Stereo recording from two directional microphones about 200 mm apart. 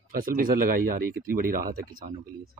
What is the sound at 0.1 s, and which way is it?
Speech, 45° right (ahead or behind).